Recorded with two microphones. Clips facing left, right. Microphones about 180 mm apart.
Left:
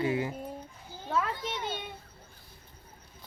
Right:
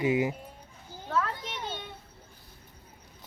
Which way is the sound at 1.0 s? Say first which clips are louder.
Even; 15° left (ahead or behind).